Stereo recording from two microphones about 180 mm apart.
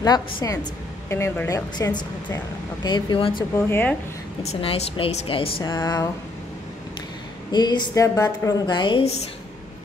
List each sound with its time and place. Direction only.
0.0 s speech: 20° left (ahead or behind)
3.5 s speech: 10° left (ahead or behind)
4.4 s a woman's voice: 35° left (ahead or behind)
7.5 s speech: 25° left (ahead or behind)